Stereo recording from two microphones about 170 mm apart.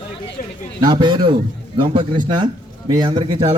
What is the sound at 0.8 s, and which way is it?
Speech, 25° right (ahead or behind).